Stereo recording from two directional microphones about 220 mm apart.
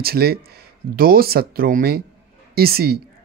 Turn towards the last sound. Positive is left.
turn(degrees=-45)  # may be behind; listen again after turning